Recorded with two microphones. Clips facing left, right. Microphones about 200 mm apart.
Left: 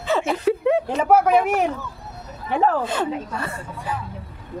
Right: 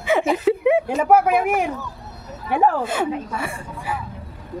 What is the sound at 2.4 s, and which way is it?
A woman's voice, 10° right (ahead or behind).